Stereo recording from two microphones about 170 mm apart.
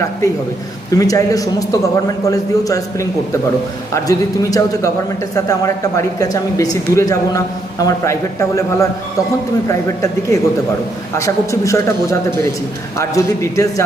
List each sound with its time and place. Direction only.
0.9 s a man's voice: 20° left (ahead or behind)
13.0 s a man's voice: 20° left (ahead or behind)